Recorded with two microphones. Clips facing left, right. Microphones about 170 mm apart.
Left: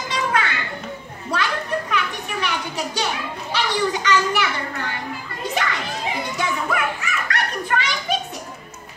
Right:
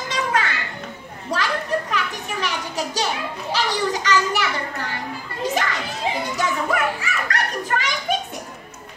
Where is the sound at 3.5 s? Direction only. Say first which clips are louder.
Left 1 dB; 40° right (ahead or behind).